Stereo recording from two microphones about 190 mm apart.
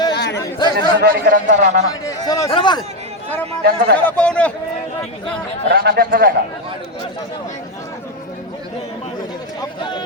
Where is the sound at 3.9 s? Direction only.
5° left (ahead or behind).